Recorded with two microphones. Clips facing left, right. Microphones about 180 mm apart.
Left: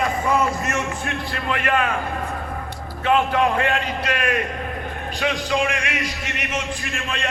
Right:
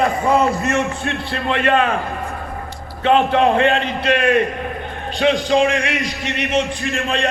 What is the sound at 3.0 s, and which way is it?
A man's voice, 30° right (ahead or behind).